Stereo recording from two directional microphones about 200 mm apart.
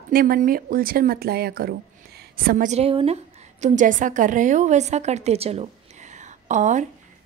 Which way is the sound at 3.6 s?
40° right (ahead or behind).